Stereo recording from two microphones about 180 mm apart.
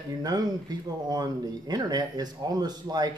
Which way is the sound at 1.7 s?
20° right (ahead or behind).